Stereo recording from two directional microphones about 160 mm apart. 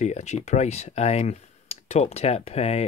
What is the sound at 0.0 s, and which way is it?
Speech, 45° left (ahead or behind).